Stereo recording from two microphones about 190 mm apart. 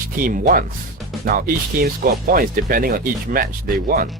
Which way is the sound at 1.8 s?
50° right (ahead or behind).